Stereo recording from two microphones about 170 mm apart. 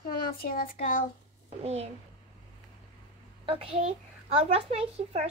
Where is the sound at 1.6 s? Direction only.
40° right (ahead or behind).